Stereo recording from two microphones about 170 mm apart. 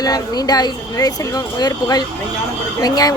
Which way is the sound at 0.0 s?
25° left (ahead or behind).